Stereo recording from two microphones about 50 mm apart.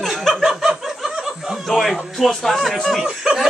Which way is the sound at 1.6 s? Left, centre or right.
Centre.